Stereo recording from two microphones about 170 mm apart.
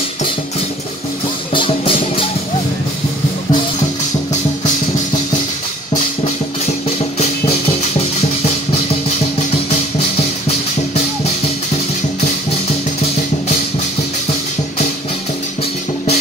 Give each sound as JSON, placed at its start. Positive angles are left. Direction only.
{"t": 1.5, "sound": "music", "side_deg": 30}